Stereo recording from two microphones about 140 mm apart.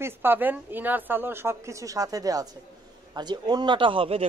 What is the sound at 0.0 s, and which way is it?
Speech, 15° right (ahead or behind).